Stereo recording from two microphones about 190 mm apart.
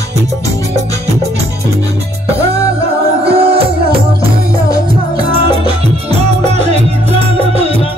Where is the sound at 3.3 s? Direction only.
30° right (ahead or behind).